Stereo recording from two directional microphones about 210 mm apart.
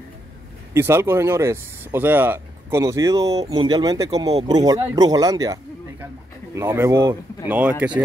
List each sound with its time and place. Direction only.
0.7 s speech: 10° right (ahead or behind)